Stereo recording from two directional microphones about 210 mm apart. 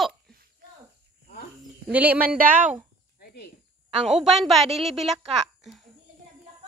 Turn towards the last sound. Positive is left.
turn(degrees=0)  # may be behind; listen again after turning